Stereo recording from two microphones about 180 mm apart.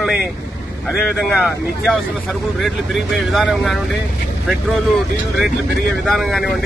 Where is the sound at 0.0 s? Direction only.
Centre (ahead or behind).